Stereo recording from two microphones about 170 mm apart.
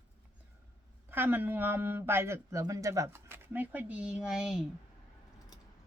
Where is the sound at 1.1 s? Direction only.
10° right (ahead or behind).